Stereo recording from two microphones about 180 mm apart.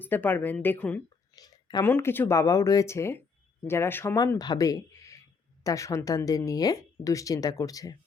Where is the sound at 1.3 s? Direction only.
20° left (ahead or behind).